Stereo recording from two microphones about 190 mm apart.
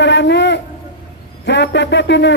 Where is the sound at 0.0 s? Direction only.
70° left (ahead or behind).